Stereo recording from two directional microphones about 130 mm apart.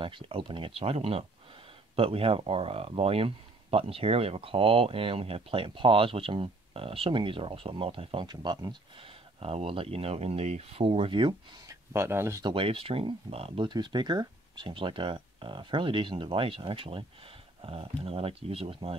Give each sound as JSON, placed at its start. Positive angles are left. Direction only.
{"t": 0.0, "sound": "speech", "side_deg": -45}
{"t": 9.4, "sound": "speech", "side_deg": -50}
{"t": 11.6, "sound": "speech", "side_deg": -25}
{"t": 12.4, "sound": "speech", "side_deg": -45}